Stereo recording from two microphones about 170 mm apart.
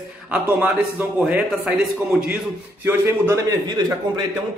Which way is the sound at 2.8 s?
15° right (ahead or behind).